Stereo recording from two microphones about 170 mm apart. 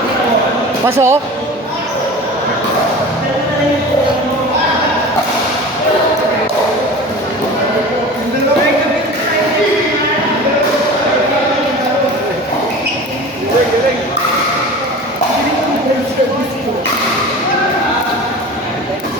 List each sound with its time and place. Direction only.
0.9 s speech: 15° right (ahead or behind)